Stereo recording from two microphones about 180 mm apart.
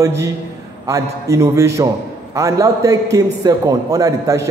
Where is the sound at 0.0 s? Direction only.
15° right (ahead or behind).